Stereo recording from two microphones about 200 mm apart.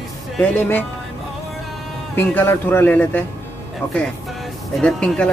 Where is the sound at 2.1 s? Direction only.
10° left (ahead or behind).